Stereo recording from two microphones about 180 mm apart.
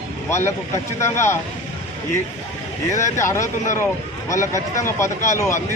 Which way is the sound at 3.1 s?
15° left (ahead or behind).